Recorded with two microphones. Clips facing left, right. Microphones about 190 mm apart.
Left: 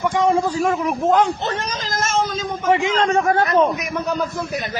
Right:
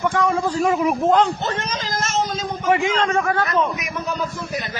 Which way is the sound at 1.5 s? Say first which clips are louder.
Left 1 dB; 40° left (ahead or behind).